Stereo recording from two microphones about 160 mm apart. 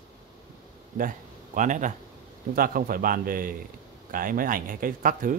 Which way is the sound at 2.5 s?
65° right (ahead or behind).